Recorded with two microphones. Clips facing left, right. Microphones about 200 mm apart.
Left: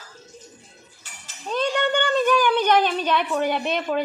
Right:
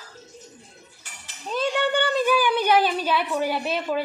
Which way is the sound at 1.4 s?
5° right (ahead or behind).